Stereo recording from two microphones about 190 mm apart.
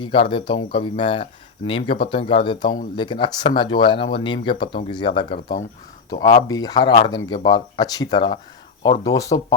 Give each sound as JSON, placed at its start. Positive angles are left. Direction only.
{"t": 0.0, "sound": "speech", "side_deg": 25}